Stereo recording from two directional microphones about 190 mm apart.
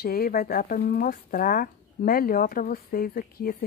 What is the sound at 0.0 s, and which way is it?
Speech, 50° left (ahead or behind).